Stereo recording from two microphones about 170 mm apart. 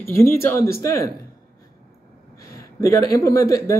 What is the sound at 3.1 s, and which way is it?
Speech, 20° left (ahead or behind).